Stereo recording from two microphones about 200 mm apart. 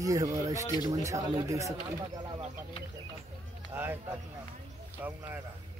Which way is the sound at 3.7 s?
10° right (ahead or behind).